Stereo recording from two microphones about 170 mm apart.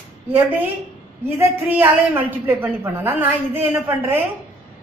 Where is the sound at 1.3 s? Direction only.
10° right (ahead or behind).